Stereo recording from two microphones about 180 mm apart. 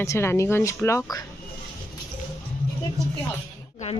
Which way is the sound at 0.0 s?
15° left (ahead or behind).